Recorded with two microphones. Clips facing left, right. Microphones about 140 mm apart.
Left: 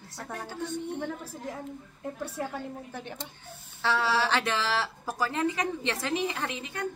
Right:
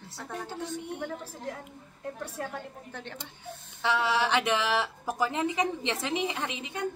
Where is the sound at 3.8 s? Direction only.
20° right (ahead or behind).